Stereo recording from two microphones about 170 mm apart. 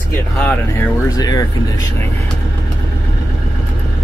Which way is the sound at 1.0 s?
20° left (ahead or behind).